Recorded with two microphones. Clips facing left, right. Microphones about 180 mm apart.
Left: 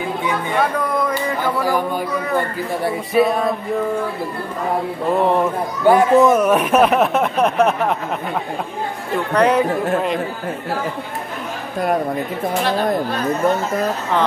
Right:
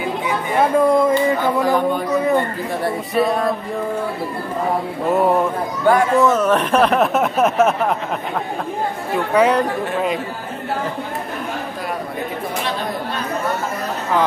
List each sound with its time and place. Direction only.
0.6 s speech: 25° right (ahead or behind)
2.8 s speech: centre (ahead or behind)
5.1 s speech: 5° right (ahead or behind)
5.9 s speech: 15° left (ahead or behind); by 7.9 s centre (ahead or behind)
9.1 s speech: centre (ahead or behind)